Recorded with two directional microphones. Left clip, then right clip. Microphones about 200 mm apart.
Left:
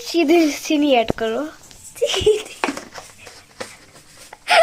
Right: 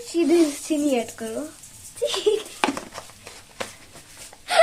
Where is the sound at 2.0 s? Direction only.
30° left (ahead or behind).